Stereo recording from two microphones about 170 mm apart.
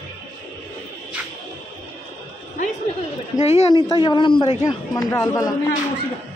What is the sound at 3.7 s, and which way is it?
A man's voice, 30° left (ahead or behind).